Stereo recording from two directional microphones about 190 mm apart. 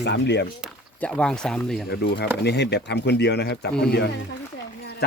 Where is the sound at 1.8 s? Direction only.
60° left (ahead or behind).